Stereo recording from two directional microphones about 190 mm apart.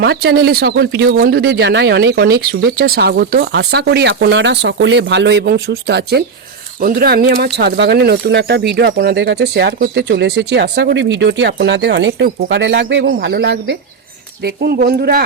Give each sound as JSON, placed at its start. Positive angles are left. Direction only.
{"t": 0.0, "sound": "speech", "side_deg": -60}
{"t": 13.1, "sound": "speech", "side_deg": -55}